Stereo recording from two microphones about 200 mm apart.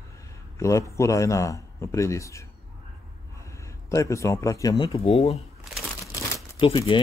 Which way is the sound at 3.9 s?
15° left (ahead or behind).